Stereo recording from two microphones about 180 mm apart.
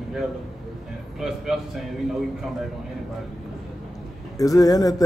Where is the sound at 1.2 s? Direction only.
Centre (ahead or behind).